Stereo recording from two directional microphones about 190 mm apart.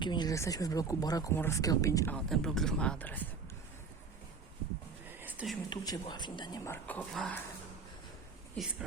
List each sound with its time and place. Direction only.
0.0 s speech: 25° left (ahead or behind)
2.1 s speech: 5° left (ahead or behind)
5.2 s whispering: 5° right (ahead or behind)
5.6 s speech: 20° left (ahead or behind)
6.8 s speech: 5° left (ahead or behind)